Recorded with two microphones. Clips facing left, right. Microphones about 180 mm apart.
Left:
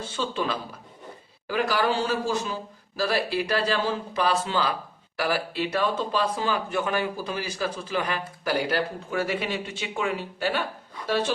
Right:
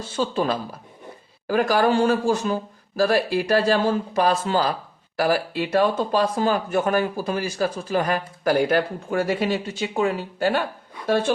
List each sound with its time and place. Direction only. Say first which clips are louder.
0.2 s speech: right 6 dB; 45° right (ahead or behind)